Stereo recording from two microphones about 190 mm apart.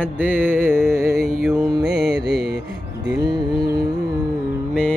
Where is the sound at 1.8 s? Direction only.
60° right (ahead or behind).